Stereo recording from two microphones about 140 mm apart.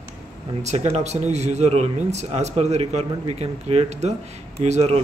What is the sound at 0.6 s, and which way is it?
Speech, 55° right (ahead or behind).